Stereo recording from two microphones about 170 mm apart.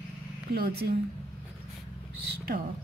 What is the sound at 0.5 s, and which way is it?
Speech, 65° right (ahead or behind).